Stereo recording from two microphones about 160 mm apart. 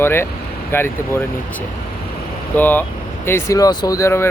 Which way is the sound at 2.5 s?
10° left (ahead or behind).